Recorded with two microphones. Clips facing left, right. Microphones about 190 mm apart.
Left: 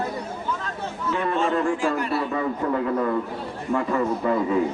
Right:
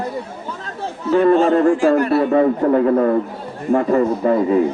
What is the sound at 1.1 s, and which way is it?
A man's voice, 40° right (ahead or behind).